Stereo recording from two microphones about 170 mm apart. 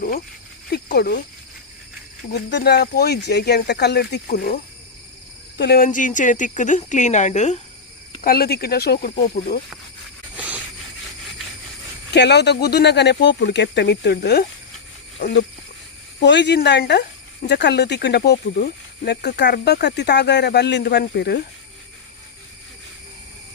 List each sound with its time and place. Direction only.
0.7 s speech: 70° left (ahead or behind)
2.3 s speech: 75° left (ahead or behind); by 7.6 s 45° left (ahead or behind)
8.2 s speech: 65° left (ahead or behind)
10.3 s a sound: 10° right (ahead or behind)
12.1 s speech: 85° left; by 14.4 s 70° left (ahead or behind)
15.2 s speech: 90° left